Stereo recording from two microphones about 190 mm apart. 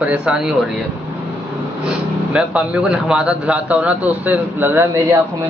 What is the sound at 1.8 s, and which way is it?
Speech, 5° right (ahead or behind).